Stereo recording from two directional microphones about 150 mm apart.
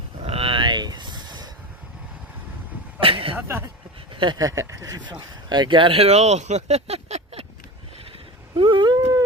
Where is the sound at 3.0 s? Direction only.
35° right (ahead or behind).